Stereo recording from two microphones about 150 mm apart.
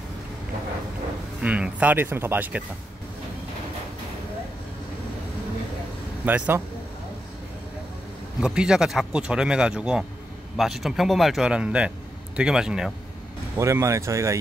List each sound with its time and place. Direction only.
1.4 s speech: 10° right (ahead or behind)
6.2 s speech: 10° right (ahead or behind)
8.4 s speech: 5° right (ahead or behind)
13.6 s speech: 20° right (ahead or behind)